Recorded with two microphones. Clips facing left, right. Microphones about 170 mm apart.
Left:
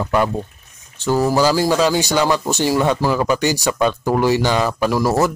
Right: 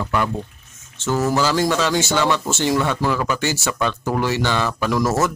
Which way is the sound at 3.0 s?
30° left (ahead or behind).